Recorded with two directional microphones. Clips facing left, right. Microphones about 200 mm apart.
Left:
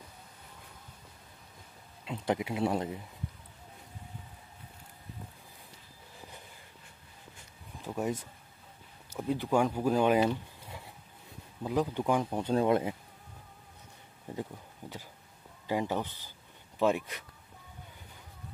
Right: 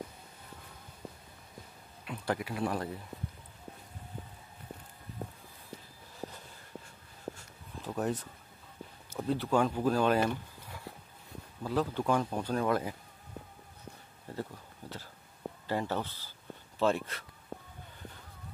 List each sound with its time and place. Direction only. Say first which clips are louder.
2.0 s speech: left 3 dB; 20° left (ahead or behind)
6.2 s a sound: right 9 dB; 50° right (ahead or behind)
7.8 s speech: even; 10° left (ahead or behind)
11.6 s speech: left 1 dB; 15° left (ahead or behind)
14.2 s a sound: left 1 dB; 15° left (ahead or behind)
15.6 s speech: left 2 dB; 15° left (ahead or behind)